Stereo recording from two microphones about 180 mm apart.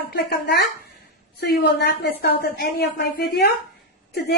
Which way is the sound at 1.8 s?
60° left (ahead or behind).